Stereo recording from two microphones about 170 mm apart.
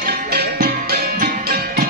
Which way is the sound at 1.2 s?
55° right (ahead or behind).